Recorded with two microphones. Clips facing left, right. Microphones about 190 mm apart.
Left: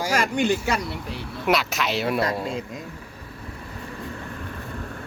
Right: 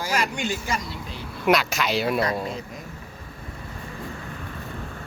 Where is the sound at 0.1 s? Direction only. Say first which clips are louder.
Left 5 dB; 55° left (ahead or behind).